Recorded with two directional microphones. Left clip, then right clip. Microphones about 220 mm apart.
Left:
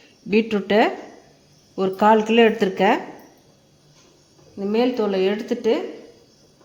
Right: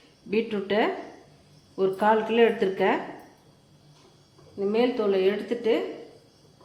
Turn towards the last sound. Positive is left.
turn(degrees=40)  # may be behind; listen again after turning